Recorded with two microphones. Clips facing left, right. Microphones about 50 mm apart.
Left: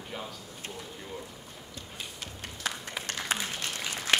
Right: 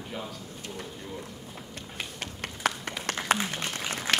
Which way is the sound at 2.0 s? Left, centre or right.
Right.